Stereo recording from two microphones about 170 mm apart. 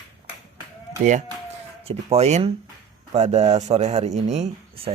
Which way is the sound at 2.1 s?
40° right (ahead or behind).